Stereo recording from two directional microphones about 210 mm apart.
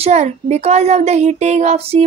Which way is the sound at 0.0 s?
35° right (ahead or behind).